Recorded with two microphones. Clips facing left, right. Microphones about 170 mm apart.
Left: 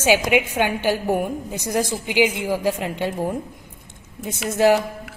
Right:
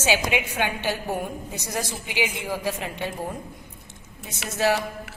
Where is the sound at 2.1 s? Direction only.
10° left (ahead or behind).